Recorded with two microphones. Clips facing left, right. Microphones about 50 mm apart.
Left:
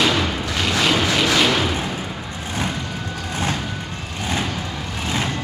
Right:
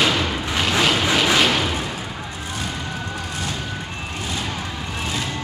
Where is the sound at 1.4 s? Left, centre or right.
Centre.